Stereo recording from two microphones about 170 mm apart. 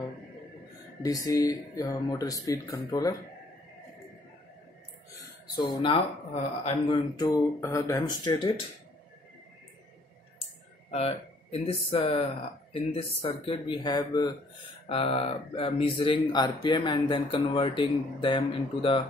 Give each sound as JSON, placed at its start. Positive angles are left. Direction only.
{"t": 1.0, "sound": "speech", "side_deg": 20}
{"t": 5.8, "sound": "speech", "side_deg": 35}
{"t": 7.6, "sound": "speech", "side_deg": 15}
{"t": 10.9, "sound": "speech", "side_deg": 35}
{"t": 14.9, "sound": "speech", "side_deg": 35}